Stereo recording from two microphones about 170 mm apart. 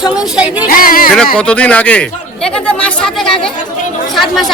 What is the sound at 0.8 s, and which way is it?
Speech, 55° left (ahead or behind).